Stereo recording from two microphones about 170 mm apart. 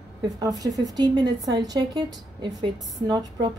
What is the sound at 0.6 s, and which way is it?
A woman's voice, 20° right (ahead or behind).